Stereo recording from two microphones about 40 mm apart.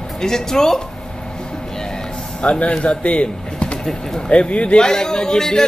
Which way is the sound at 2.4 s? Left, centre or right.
Left.